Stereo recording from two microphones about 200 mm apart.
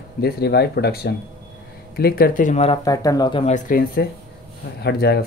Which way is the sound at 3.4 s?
40° left (ahead or behind).